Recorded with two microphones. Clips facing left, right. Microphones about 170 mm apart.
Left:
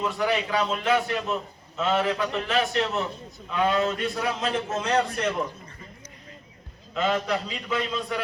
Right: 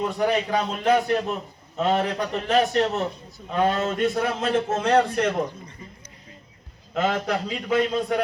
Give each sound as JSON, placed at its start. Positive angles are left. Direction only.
{"t": 0.0, "sound": "a man's voice", "side_deg": -40}
{"t": 6.9, "sound": "a man's voice", "side_deg": -55}